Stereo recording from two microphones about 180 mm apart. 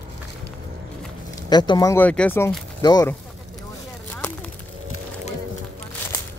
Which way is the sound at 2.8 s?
20° left (ahead or behind).